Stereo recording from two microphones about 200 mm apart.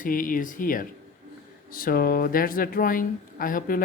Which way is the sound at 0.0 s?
45° left (ahead or behind).